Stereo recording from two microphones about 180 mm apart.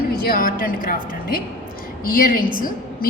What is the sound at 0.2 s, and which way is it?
A woman's voice, 55° left (ahead or behind).